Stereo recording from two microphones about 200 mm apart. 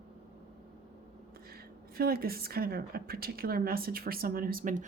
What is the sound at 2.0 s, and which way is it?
A woman's voice, 50° right (ahead or behind).